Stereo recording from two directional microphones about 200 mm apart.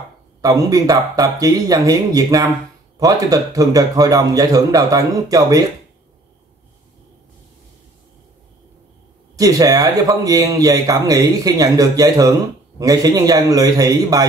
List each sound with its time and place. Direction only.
0.4 s speech: 20° right (ahead or behind)
9.4 s speech: 15° right (ahead or behind)